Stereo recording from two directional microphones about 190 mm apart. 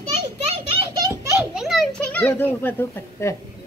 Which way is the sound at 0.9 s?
15° right (ahead or behind).